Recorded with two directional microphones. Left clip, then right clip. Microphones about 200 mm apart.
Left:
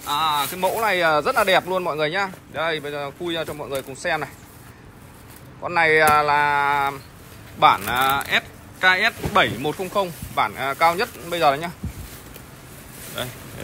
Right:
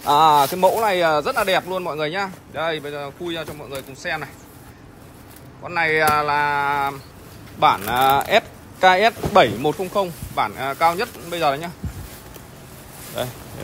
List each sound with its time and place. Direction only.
0.0 s speech: 35° right (ahead or behind)
0.7 s speech: 15° right (ahead or behind)
5.6 s speech: 10° right (ahead or behind)
13.2 s speech: 20° right (ahead or behind)